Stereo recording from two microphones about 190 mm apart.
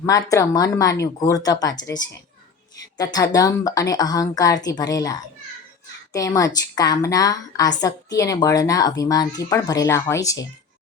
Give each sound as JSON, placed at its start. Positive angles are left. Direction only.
{"t": 0.0, "sound": "a woman's voice", "side_deg": 15}